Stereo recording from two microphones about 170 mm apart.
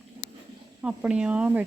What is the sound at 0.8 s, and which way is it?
Speech, 5° right (ahead or behind).